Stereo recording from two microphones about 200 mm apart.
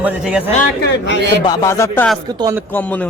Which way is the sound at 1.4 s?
15° left (ahead or behind).